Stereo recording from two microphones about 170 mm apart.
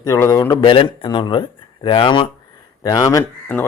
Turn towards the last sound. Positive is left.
turn(degrees=15)  # may be behind; listen again after turning